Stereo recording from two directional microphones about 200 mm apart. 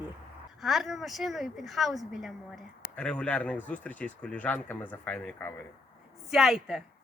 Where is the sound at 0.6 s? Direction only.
Centre (ahead or behind).